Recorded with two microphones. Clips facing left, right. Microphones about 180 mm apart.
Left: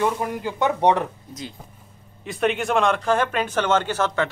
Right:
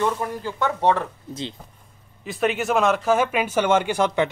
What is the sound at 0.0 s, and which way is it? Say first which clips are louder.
Speech: left 1 dB; 15° left (ahead or behind).